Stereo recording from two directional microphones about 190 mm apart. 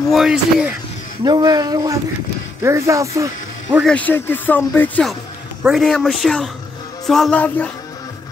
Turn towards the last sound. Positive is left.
turn(degrees=5)  # may be behind; listen again after turning